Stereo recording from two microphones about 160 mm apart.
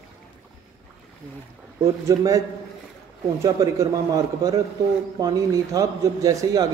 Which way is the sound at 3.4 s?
20° right (ahead or behind).